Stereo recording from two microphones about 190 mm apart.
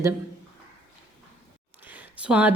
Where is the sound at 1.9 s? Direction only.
5° right (ahead or behind).